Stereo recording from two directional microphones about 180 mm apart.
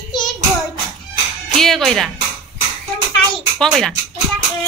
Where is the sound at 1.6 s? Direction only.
Centre (ahead or behind).